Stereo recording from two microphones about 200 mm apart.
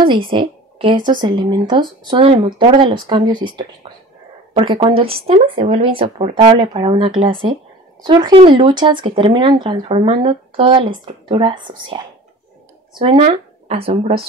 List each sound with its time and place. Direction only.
0.0 s speech: 25° right (ahead or behind)
12.9 s speech: 25° right (ahead or behind)